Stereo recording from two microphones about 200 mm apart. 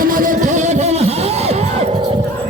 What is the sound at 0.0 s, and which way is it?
Music, 40° right (ahead or behind).